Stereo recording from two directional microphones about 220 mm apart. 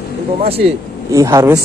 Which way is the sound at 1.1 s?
15° right (ahead or behind).